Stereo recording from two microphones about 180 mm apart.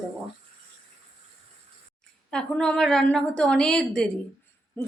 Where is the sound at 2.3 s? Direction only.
5° left (ahead or behind).